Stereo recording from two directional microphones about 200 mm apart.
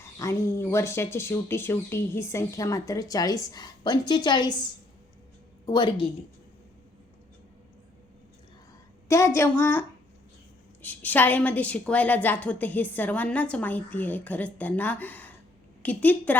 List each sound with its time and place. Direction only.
0.0 s speech: 15° left (ahead or behind)
5.6 s a woman's voice: 20° left (ahead or behind)
9.0 s speech: 15° left (ahead or behind)
10.8 s speech: 10° left (ahead or behind)